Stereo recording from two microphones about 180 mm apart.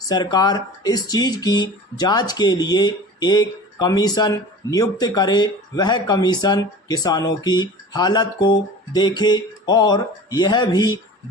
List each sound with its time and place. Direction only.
0.1 s speech: 20° left (ahead or behind)